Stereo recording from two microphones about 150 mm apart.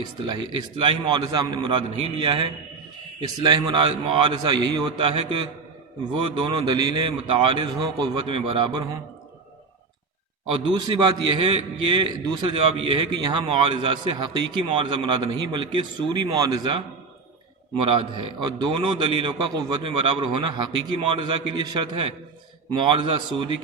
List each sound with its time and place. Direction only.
0.8 s a man's voice: 30° right (ahead or behind)
10.5 s a man's voice: 30° right (ahead or behind)
17.8 s a man's voice: 30° right (ahead or behind)